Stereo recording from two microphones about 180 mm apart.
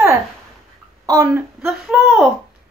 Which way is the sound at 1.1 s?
15° right (ahead or behind).